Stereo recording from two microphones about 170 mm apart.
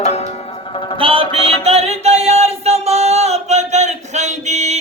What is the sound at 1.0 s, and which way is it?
Music, 35° right (ahead or behind).